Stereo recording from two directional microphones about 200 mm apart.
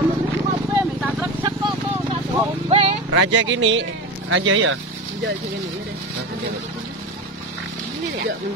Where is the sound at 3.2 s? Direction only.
70° right (ahead or behind).